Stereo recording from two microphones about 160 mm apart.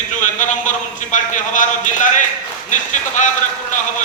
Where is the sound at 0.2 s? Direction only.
50° left (ahead or behind).